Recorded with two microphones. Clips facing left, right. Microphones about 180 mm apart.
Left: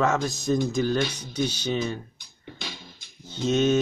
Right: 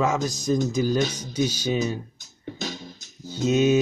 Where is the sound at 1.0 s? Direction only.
45° right (ahead or behind).